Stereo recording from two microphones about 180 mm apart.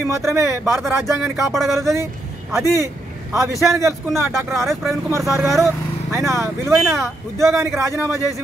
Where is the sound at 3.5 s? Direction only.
Centre (ahead or behind).